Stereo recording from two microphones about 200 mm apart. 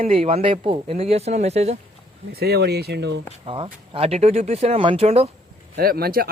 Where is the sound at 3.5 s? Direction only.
25° right (ahead or behind).